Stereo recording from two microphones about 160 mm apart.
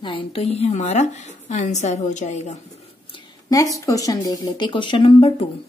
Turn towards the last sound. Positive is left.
turn(degrees=35)  # may be behind; listen again after turning